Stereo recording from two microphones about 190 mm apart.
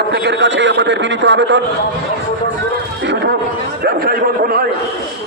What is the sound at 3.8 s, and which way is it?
Speech, 55° right (ahead or behind).